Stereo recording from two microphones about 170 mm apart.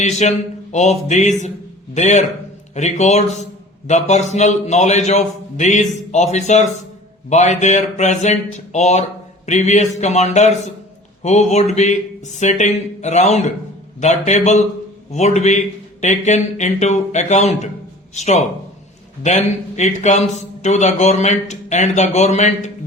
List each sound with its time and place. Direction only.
0.0 s a man's voice: 45° left (ahead or behind)